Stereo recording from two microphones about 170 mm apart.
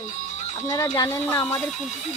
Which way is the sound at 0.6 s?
20° left (ahead or behind).